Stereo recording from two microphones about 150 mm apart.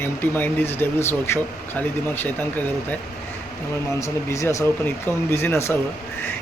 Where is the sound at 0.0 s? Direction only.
15° left (ahead or behind).